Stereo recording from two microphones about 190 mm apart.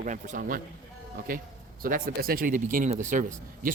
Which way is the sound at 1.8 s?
50° right (ahead or behind).